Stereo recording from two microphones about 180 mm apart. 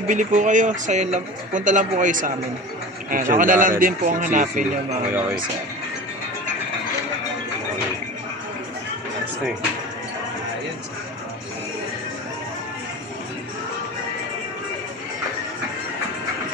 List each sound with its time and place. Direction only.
0.1 s speech: 45° right (ahead or behind)